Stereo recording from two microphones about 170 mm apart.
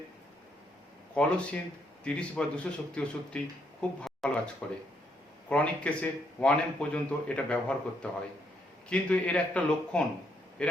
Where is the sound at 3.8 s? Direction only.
Centre (ahead or behind).